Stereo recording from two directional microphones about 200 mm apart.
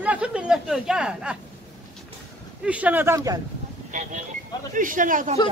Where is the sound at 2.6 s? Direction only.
5° right (ahead or behind).